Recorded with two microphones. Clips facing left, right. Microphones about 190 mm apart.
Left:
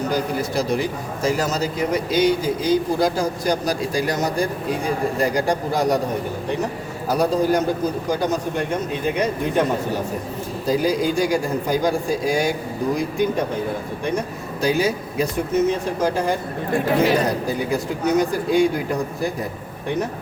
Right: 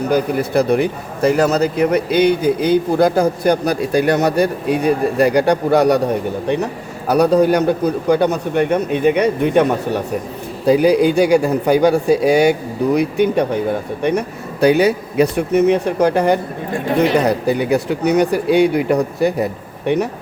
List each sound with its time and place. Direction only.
0.1 s speech: 60° right (ahead or behind)
7.1 s speech: 70° right (ahead or behind)